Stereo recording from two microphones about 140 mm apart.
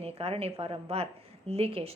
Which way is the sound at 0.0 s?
45° right (ahead or behind).